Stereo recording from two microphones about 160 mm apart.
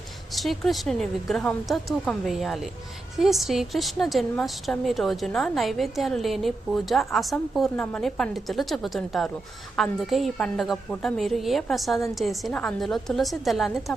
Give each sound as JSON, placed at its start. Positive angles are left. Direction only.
{"t": 0.3, "sound": "a woman's voice", "side_deg": 0}